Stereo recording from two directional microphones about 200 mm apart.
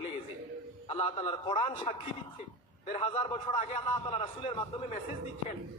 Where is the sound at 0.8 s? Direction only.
30° left (ahead or behind).